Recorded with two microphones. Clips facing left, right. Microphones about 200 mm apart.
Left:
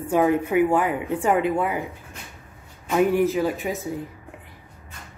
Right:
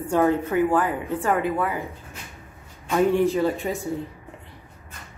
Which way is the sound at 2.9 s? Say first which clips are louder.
Even; 10° left (ahead or behind).